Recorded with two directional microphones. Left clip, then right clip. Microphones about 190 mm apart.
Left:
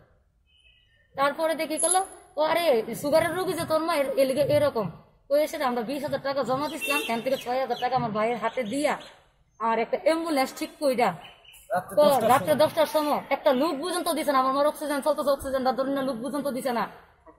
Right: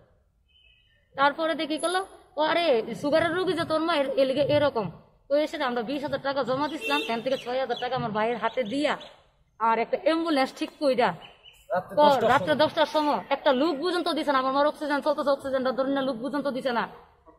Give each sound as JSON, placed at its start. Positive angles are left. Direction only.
{"t": 1.1, "sound": "a woman's voice", "side_deg": -5}
{"t": 15.3, "sound": "speech", "side_deg": -35}
{"t": 16.3, "sound": "a woman's voice", "side_deg": -5}